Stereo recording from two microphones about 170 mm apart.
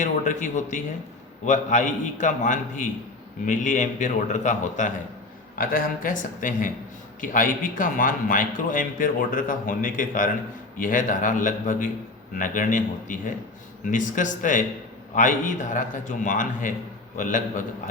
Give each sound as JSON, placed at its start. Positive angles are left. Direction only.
{"t": 0.0, "sound": "a man's voice", "side_deg": 45}